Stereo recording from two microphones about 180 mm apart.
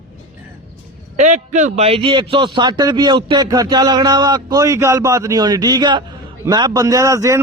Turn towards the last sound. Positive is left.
turn(degrees=-15)  # may be behind; listen again after turning